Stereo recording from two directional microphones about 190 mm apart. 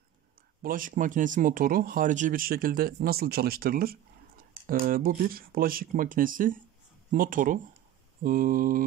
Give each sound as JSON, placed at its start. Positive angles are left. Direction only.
{"t": 0.6, "sound": "speech", "side_deg": -45}